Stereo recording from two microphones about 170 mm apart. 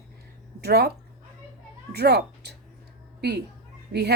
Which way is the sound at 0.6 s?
70° right (ahead or behind).